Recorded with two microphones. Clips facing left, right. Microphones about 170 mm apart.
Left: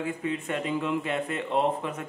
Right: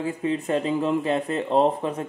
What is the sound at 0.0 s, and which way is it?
A man's voice, 30° right (ahead or behind).